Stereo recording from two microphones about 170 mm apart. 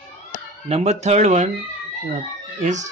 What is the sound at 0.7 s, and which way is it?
Speech, 40° right (ahead or behind).